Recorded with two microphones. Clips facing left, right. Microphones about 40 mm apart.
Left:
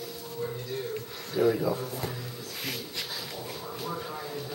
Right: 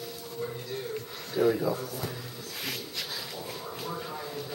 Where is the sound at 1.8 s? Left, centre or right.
Left.